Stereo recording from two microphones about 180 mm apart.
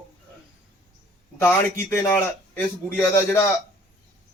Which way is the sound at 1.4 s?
15° left (ahead or behind).